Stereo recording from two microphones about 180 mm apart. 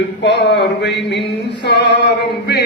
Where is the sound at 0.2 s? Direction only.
75° left (ahead or behind).